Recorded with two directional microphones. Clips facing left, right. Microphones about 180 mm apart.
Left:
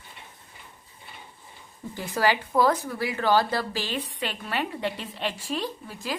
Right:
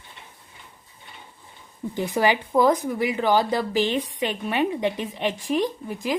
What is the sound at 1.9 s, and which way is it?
A woman's voice, 20° right (ahead or behind).